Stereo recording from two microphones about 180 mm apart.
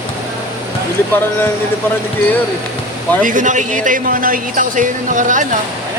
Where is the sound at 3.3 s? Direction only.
45° right (ahead or behind).